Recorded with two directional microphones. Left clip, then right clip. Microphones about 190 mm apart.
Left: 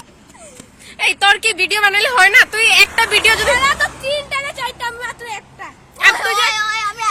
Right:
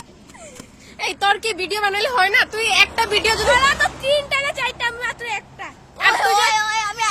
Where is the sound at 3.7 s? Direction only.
Centre (ahead or behind).